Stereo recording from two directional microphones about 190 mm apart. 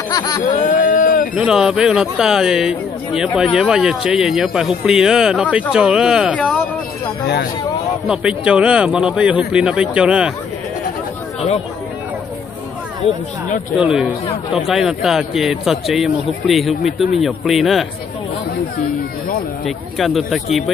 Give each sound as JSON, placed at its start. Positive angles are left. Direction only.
{"t": 0.1, "sound": "a sound", "side_deg": 20}
{"t": 0.5, "sound": "a sound", "side_deg": 40}
{"t": 1.3, "sound": "speech", "side_deg": -5}
{"t": 8.1, "sound": "speech", "side_deg": -5}
{"t": 13.0, "sound": "speech", "side_deg": 30}
{"t": 13.9, "sound": "speech", "side_deg": -5}
{"t": 19.6, "sound": "speech", "side_deg": 0}